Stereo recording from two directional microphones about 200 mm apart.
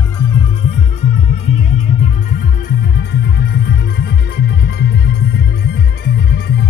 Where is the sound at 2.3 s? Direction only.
50° left (ahead or behind).